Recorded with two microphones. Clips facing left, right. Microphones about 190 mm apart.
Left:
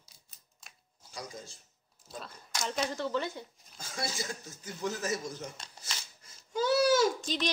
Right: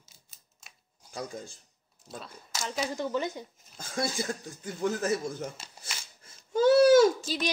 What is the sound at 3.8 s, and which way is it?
Speech, 55° right (ahead or behind).